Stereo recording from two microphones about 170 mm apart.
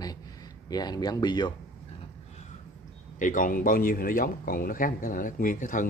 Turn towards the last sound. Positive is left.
turn(degrees=50)  # may be behind; listen again after turning